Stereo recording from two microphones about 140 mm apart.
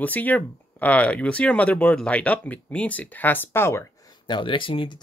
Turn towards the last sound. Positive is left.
turn(degrees=35)  # may be behind; listen again after turning